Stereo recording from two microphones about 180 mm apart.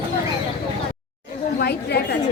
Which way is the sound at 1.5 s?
65° left (ahead or behind).